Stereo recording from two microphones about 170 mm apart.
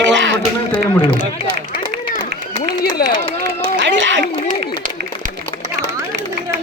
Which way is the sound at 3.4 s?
90° right.